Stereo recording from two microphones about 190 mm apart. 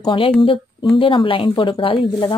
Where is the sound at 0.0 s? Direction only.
25° left (ahead or behind).